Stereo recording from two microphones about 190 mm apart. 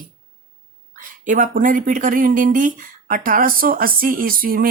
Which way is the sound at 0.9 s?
45° right (ahead or behind).